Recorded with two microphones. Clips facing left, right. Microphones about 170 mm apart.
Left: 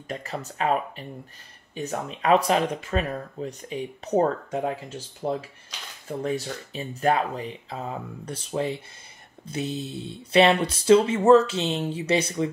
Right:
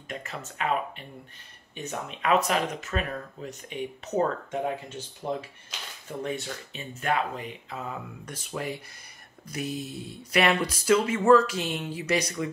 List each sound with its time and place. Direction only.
0.1 s speech: 35° left (ahead or behind)